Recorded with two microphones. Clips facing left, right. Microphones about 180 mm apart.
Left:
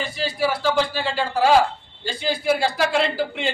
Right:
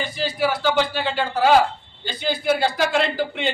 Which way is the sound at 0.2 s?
Centre (ahead or behind).